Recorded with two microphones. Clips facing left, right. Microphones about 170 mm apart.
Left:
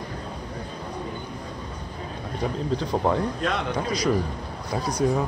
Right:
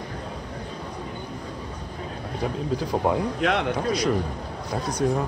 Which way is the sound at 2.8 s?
5° right (ahead or behind).